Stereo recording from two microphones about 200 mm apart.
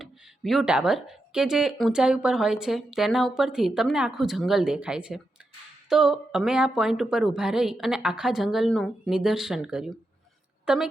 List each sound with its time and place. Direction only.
0.0 s speech: centre (ahead or behind)